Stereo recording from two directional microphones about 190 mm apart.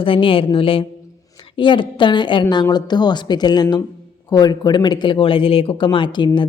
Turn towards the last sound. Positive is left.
turn(degrees=25)  # may be behind; listen again after turning